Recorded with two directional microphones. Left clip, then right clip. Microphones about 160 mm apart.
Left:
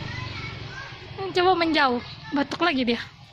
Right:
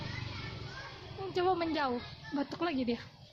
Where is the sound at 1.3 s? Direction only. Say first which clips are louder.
Left 11 dB; 30° left (ahead or behind).